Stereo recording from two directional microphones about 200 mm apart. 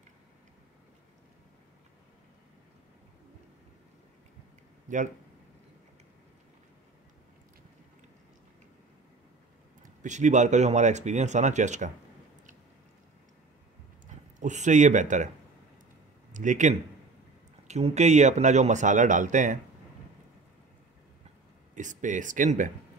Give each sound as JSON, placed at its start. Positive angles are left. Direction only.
{"t": 4.8, "sound": "a sound", "side_deg": -40}
{"t": 9.8, "sound": "speech", "side_deg": -35}
{"t": 14.4, "sound": "speech", "side_deg": -35}
{"t": 16.3, "sound": "speech", "side_deg": -40}
{"t": 21.7, "sound": "speech", "side_deg": -40}